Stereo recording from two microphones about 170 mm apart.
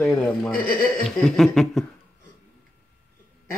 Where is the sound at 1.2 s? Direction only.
Centre (ahead or behind).